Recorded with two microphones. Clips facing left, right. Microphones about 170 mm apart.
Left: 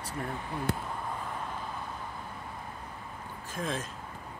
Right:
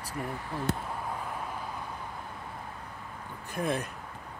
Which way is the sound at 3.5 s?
65° right (ahead or behind).